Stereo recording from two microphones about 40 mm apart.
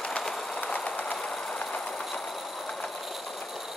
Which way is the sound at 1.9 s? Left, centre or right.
Centre.